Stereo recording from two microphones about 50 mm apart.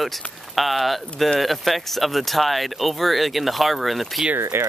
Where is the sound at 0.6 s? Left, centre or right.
Centre.